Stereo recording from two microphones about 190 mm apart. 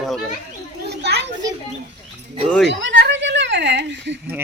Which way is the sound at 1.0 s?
65° right (ahead or behind).